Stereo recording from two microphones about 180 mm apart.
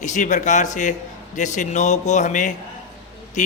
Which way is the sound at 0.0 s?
45° left (ahead or behind).